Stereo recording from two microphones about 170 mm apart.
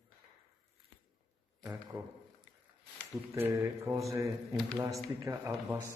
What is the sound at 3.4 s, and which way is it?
Speech, 15° right (ahead or behind).